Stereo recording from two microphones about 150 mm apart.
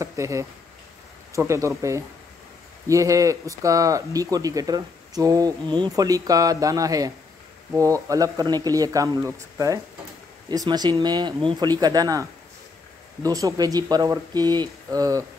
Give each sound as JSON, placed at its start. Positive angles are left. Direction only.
{"t": 0.0, "sound": "speech", "side_deg": -20}